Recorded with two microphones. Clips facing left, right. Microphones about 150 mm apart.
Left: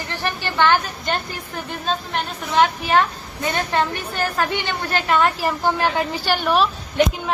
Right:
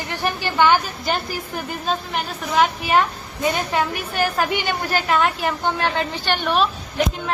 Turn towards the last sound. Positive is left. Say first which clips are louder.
# left 2 dB
turn(degrees=5)  # may be behind; listen again after turning